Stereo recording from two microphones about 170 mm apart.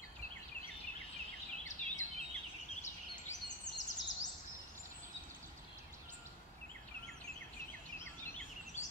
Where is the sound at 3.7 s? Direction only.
90° left.